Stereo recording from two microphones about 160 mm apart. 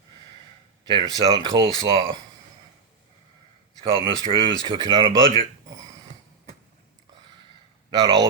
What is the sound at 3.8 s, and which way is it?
Speech, 30° right (ahead or behind).